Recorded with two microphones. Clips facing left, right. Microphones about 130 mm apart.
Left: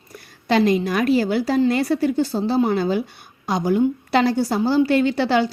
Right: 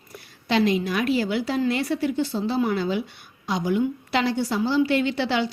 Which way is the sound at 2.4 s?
30° left (ahead or behind).